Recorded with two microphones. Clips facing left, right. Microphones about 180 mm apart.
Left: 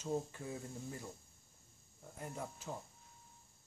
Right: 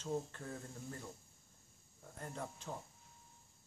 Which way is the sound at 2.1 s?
5° left (ahead or behind).